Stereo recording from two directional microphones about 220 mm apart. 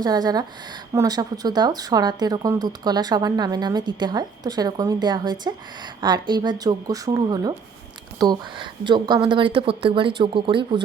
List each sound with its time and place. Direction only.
0.0 s speech: 20° right (ahead or behind)